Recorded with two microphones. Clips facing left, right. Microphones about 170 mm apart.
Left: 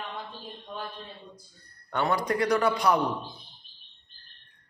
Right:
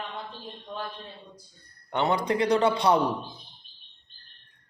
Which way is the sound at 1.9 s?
20° right (ahead or behind).